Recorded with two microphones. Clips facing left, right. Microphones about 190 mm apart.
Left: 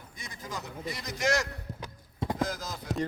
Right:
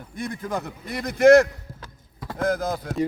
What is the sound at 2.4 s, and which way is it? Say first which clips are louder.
Speech: right 9 dB; 55° right (ahead or behind).